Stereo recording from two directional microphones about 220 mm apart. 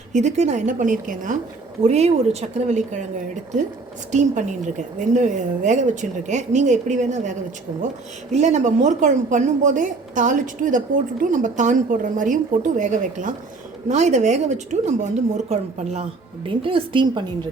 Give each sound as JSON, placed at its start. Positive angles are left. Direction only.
{"t": 0.1, "sound": "a woman's voice", "side_deg": -30}
{"t": 4.1, "sound": "a woman's voice", "side_deg": -35}